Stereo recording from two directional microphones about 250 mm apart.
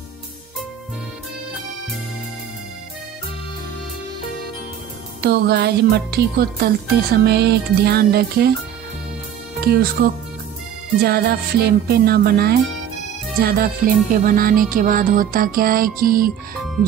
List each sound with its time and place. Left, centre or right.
5.2 s music: right
9.6 s music: right
11.0 s music: right